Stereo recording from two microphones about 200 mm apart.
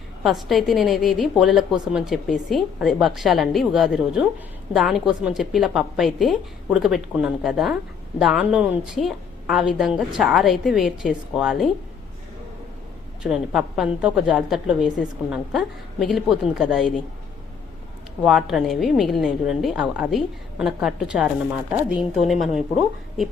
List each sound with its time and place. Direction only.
0.2 s a woman's voice: centre (ahead or behind)
13.2 s a woman's voice: 5° right (ahead or behind)
18.2 s a woman's voice: centre (ahead or behind)